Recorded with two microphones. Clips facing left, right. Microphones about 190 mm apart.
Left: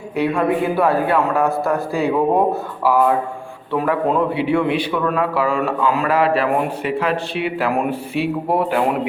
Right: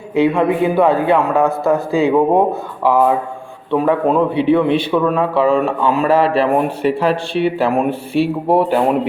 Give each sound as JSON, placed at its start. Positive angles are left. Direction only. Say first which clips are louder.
{"t": 0.2, "sound": "a man's voice", "louder": "right 4 dB", "side_deg": -20}
{"t": 3.7, "sound": "a man's voice", "louder": "right 4 dB", "side_deg": -20}